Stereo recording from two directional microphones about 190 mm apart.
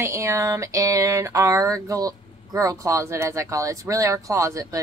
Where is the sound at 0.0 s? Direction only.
15° right (ahead or behind).